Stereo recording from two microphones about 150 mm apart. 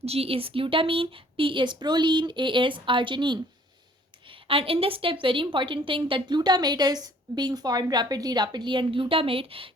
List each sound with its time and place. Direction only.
0.0 s a woman's voice: 40° right (ahead or behind)